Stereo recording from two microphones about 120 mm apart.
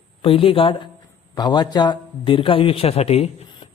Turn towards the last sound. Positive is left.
turn(degrees=55)  # may be behind; listen again after turning